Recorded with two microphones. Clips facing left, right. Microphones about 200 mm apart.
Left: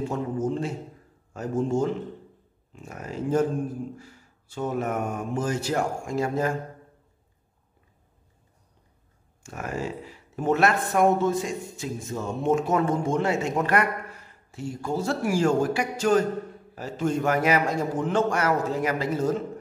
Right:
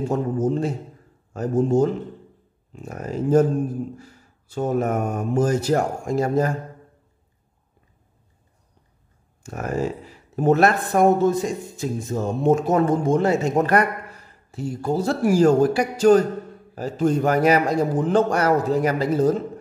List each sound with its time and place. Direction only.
0.1 s speech: 40° right (ahead or behind)
9.4 s speech: 40° right (ahead or behind)